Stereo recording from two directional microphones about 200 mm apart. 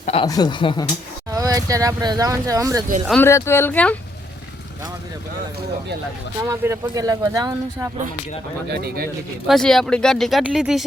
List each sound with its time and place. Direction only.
0.0 s speech: 30° left (ahead or behind)
1.3 s speech: 20° right (ahead or behind)
3.1 s speech: 10° left (ahead or behind)
6.5 s speech: 15° right (ahead or behind)
8.7 s speech: 50° right (ahead or behind)
9.5 s speech: centre (ahead or behind)